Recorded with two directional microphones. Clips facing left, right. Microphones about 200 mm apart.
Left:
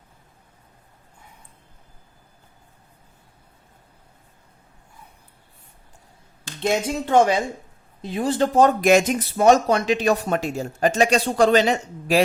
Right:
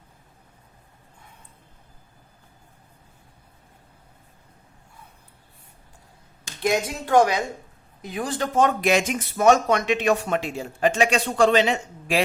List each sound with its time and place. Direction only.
6.6 s speech: 25° left (ahead or behind); by 12.2 s 40° left (ahead or behind)